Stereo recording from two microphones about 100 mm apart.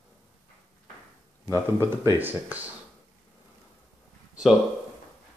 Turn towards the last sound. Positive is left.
turn(degrees=-5)  # may be behind; listen again after turning